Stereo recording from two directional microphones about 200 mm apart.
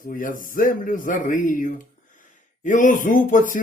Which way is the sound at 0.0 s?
45° left (ahead or behind).